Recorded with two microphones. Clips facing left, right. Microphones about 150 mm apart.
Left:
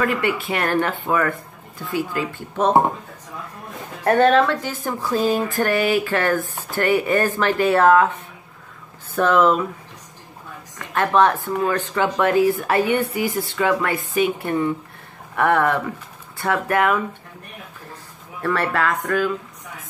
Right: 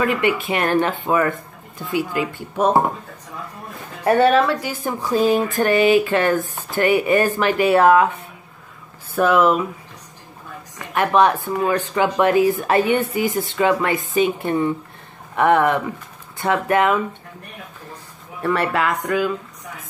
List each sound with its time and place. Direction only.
0.0 s speech: 20° right (ahead or behind)
4.0 s speech: 5° right (ahead or behind)
9.1 s speech: 10° right (ahead or behind)
10.9 s speech: 15° right (ahead or behind)
18.4 s speech: 20° right (ahead or behind)